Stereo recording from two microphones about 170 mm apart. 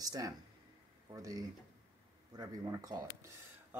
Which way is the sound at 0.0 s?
20° right (ahead or behind).